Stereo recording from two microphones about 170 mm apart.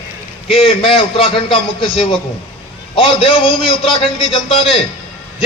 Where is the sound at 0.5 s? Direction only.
35° left (ahead or behind).